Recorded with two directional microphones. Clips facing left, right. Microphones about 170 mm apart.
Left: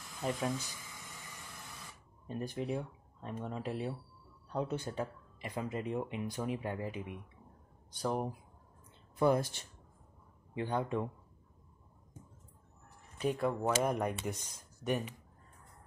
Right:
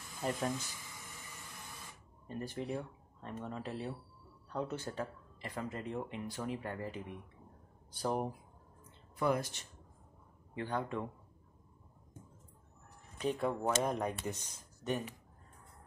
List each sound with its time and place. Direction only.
0.2 s speech: centre (ahead or behind)
2.2 s speech: 15° left (ahead or behind)
7.9 s speech: centre (ahead or behind)
9.1 s speech: 30° left (ahead or behind)
10.5 s speech: 20° left (ahead or behind)
13.4 s speech: centre (ahead or behind)